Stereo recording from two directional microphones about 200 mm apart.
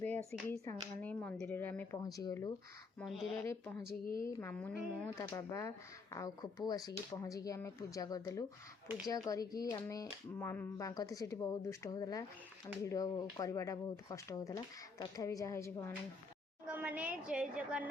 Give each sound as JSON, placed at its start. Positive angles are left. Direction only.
{"t": 0.0, "sound": "speech", "side_deg": 10}
{"t": 3.0, "sound": "speech", "side_deg": 0}
{"t": 3.4, "sound": "speech", "side_deg": 15}
{"t": 4.0, "sound": "a woman's voice", "side_deg": 45}
{"t": 4.3, "sound": "speech", "side_deg": 10}
{"t": 16.6, "sound": "a woman's voice", "side_deg": -10}